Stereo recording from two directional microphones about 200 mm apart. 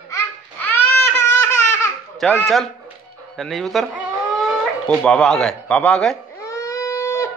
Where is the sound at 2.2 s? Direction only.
Centre (ahead or behind).